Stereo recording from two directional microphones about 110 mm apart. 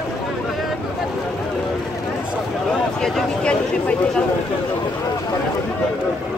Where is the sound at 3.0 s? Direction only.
5° left (ahead or behind).